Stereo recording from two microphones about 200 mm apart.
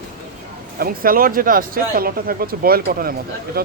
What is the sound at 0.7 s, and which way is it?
A man's voice, 45° right (ahead or behind).